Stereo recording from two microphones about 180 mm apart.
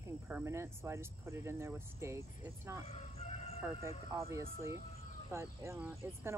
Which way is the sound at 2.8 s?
40° left (ahead or behind).